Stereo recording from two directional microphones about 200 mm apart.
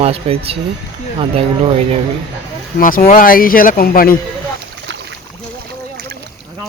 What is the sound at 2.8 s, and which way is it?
Speech, 45° left (ahead or behind).